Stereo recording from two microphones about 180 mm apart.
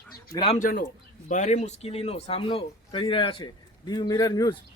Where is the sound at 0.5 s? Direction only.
50° left (ahead or behind); by 4.6 s 20° left (ahead or behind).